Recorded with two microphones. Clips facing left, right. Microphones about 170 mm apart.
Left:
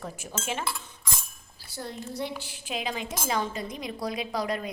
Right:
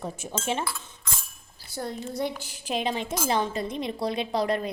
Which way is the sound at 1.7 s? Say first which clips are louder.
Right 4 dB; 50° right (ahead or behind).